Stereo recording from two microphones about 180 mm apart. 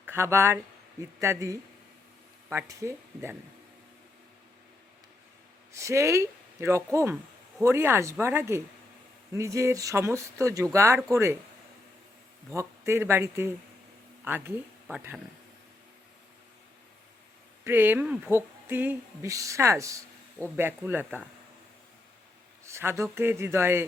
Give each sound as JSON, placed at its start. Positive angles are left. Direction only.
{"t": 0.0, "sound": "speech", "side_deg": -15}
{"t": 5.7, "sound": "speech", "side_deg": -15}
{"t": 12.5, "sound": "speech", "side_deg": -15}
{"t": 17.6, "sound": "speech", "side_deg": -10}
{"t": 22.6, "sound": "speech", "side_deg": -15}